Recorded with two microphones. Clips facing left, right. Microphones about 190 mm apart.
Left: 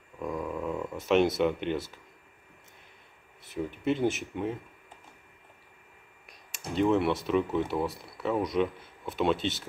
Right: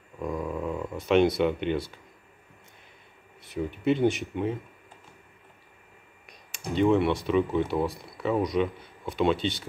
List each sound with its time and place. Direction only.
0.2 s dog: 5° right (ahead or behind)
3.4 s speech: centre (ahead or behind)
6.7 s speech: centre (ahead or behind)